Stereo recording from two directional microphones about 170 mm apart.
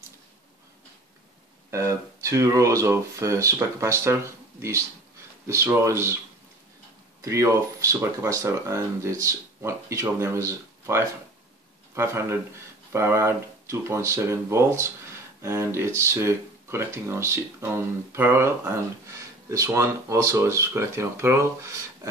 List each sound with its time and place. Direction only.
1.7 s speech: 15° right (ahead or behind)
7.2 s speech: 20° right (ahead or behind)